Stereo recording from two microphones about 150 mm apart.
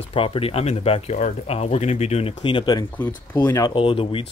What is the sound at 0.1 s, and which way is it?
Speech, 40° left (ahead or behind).